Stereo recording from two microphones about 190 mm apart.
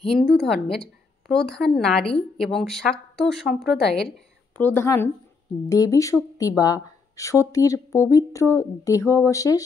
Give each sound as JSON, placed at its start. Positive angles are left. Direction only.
{"t": 0.0, "sound": "a woman's voice", "side_deg": 0}